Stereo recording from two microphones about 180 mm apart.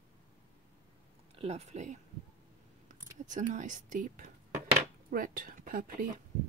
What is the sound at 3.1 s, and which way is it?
Speech, 45° right (ahead or behind).